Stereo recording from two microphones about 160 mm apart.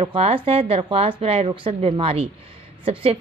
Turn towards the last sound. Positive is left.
turn(degrees=-35)  # may be behind; listen again after turning